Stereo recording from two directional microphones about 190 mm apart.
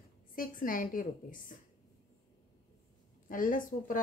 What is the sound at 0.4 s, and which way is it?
A woman's voice, 45° left (ahead or behind).